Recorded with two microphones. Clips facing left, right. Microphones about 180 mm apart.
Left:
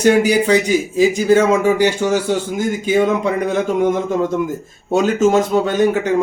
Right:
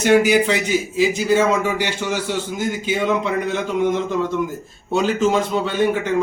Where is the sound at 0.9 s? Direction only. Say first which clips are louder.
Left 4 dB; 45° left (ahead or behind).